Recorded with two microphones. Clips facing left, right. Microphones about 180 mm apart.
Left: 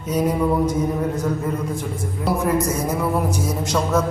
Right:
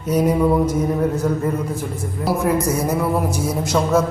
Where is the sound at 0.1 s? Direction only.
10° right (ahead or behind).